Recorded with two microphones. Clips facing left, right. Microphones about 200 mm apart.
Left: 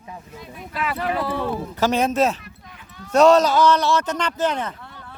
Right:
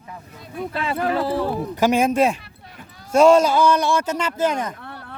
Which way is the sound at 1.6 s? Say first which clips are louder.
Right 2 dB; 15° right (ahead or behind).